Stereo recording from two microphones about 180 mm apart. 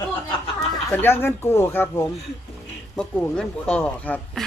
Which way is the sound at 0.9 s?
10° left (ahead or behind).